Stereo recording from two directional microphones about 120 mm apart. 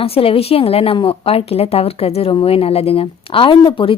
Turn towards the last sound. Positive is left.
turn(degrees=45)  # may be behind; listen again after turning